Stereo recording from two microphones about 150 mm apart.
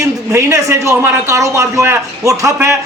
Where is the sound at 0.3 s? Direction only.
20° right (ahead or behind).